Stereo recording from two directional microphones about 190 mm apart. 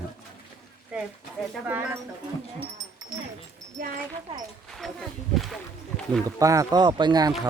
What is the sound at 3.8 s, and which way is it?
Speech, 50° right (ahead or behind).